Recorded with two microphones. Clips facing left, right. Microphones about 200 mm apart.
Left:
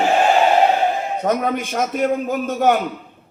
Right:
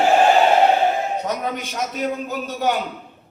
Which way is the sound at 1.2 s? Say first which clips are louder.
Left 5 dB; 50° left (ahead or behind).